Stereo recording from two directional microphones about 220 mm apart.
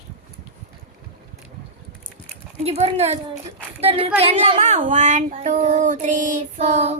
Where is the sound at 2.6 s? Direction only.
30° right (ahead or behind).